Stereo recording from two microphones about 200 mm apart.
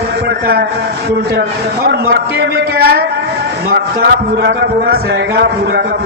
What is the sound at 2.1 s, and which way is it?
A man's voice, 50° right (ahead or behind).